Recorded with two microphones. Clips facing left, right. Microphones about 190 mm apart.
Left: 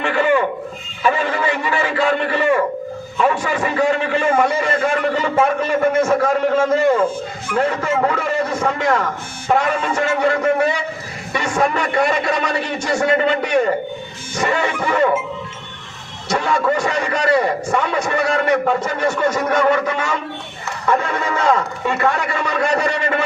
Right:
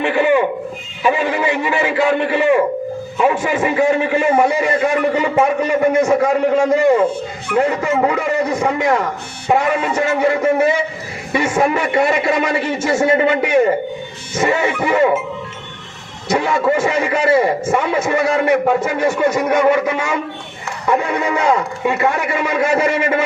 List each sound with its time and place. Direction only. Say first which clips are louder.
0.0 s a sound: right 2 dB; 15° right (ahead or behind)
1.0 s a man's voice: right 2 dB; 15° right (ahead or behind)
16.3 s a man's voice: right 2 dB; 20° right (ahead or behind)